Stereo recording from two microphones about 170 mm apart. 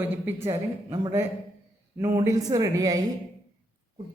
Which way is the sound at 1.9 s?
15° right (ahead or behind).